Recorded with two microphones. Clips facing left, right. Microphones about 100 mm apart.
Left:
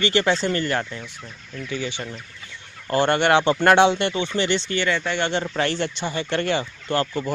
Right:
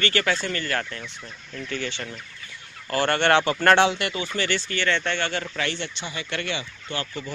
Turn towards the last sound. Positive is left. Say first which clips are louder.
# left 8 dB
turn(degrees=45)  # may be behind; listen again after turning